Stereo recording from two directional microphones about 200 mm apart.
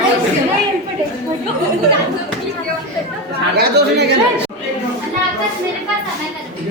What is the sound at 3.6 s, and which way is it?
Speech, 55° right (ahead or behind).